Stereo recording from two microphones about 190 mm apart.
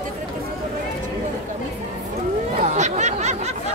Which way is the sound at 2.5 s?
35° right (ahead or behind).